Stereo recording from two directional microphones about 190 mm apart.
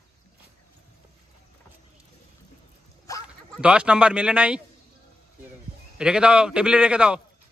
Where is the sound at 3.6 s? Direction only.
5° right (ahead or behind).